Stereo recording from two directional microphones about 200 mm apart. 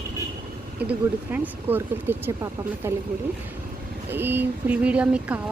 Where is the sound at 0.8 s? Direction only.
5° right (ahead or behind).